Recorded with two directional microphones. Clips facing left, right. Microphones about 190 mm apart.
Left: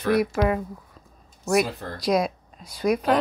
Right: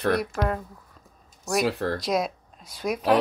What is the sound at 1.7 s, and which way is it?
Speech, 75° right (ahead or behind).